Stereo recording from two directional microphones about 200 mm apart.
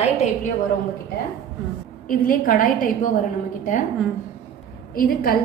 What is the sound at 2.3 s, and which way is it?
Speech, 45° left (ahead or behind).